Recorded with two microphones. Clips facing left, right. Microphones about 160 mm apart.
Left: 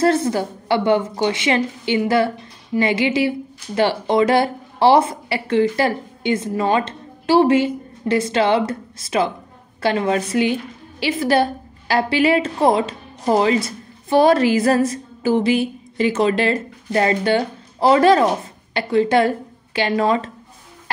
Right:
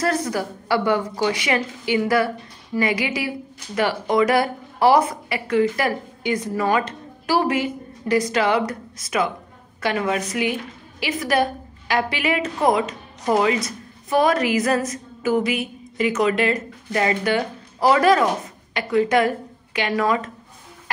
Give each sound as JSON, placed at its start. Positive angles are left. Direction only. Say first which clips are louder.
{"t": 0.0, "sound": "a woman's voice", "louder": "left 5 dB", "side_deg": 25}